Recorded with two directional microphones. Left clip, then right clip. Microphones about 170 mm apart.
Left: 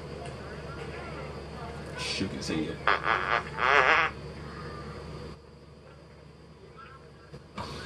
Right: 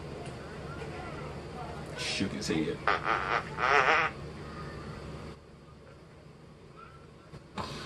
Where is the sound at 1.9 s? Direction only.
Centre (ahead or behind).